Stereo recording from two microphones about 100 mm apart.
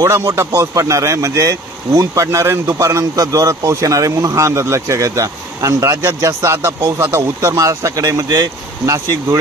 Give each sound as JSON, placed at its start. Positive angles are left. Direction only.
{"t": 0.0, "sound": "speech", "side_deg": -35}